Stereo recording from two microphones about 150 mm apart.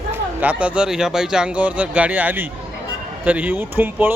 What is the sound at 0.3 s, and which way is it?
A man's voice, 10° right (ahead or behind).